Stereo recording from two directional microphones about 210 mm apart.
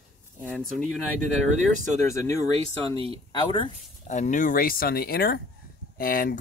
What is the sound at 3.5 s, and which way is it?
Speech, 30° left (ahead or behind).